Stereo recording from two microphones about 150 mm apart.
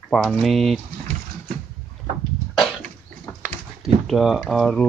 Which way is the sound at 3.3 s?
15° left (ahead or behind).